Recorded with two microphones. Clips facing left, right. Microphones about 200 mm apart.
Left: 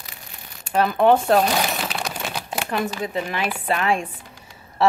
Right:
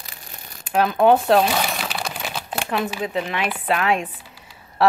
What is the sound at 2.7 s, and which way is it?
Speech, 5° right (ahead or behind).